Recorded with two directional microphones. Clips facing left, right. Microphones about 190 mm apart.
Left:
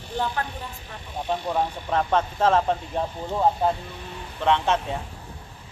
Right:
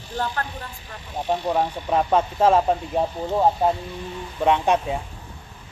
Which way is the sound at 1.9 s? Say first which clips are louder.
Right 3 dB; 10° right (ahead or behind).